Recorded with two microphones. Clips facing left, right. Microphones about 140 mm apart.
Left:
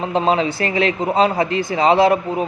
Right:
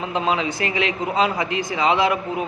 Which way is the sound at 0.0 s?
35° left (ahead or behind).